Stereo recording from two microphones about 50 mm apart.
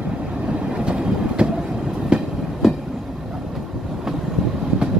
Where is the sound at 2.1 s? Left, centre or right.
Centre.